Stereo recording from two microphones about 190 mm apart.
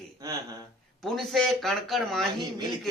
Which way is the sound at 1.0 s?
Centre (ahead or behind).